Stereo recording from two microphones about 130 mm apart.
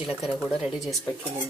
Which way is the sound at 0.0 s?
Centre (ahead or behind).